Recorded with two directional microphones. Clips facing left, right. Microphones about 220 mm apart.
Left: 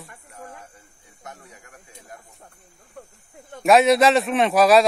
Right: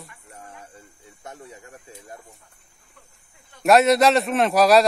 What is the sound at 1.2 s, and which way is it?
Snake, 30° right (ahead or behind).